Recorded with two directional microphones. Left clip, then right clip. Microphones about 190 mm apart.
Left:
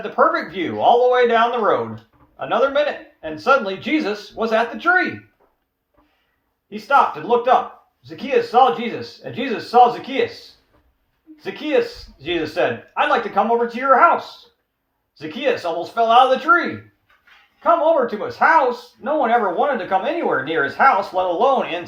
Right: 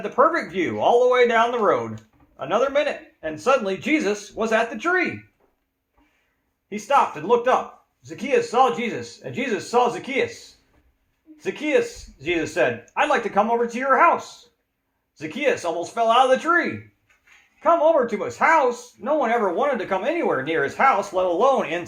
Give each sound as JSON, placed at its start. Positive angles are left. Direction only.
{"t": 0.0, "sound": "speech", "side_deg": -55}
{"t": 6.7, "sound": "speech", "side_deg": -55}
{"t": 11.4, "sound": "speech", "side_deg": -55}
{"t": 17.6, "sound": "speech", "side_deg": -55}